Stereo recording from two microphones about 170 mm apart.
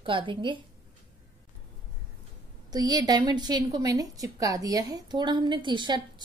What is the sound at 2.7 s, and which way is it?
A woman's voice, 25° right (ahead or behind).